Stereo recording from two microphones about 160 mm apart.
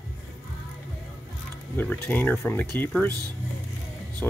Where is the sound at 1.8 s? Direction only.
10° left (ahead or behind).